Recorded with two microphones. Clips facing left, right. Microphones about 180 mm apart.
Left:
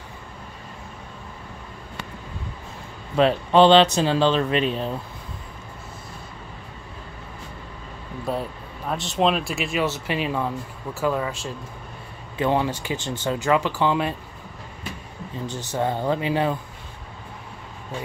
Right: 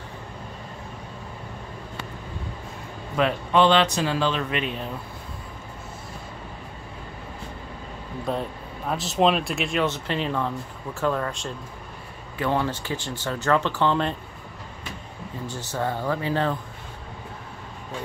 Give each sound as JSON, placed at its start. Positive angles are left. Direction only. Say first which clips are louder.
{"t": 3.2, "sound": "speech", "louder": "left 4 dB", "side_deg": 30}
{"t": 8.3, "sound": "speech", "louder": "left 1 dB", "side_deg": 0}
{"t": 12.4, "sound": "speech", "louder": "left 3 dB", "side_deg": 15}
{"t": 15.4, "sound": "speech", "louder": "left 3 dB", "side_deg": 20}